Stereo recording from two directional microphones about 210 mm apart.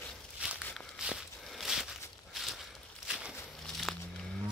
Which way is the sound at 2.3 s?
Centre (ahead or behind).